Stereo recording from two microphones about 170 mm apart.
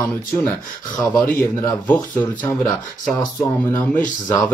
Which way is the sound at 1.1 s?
15° left (ahead or behind).